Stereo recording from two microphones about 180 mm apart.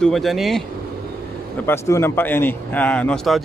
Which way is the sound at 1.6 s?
15° left (ahead or behind).